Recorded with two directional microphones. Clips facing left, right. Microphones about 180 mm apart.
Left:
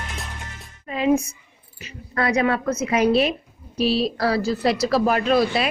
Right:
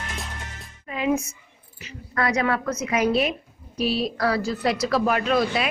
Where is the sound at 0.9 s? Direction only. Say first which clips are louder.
Left 4 dB; 30° left (ahead or behind).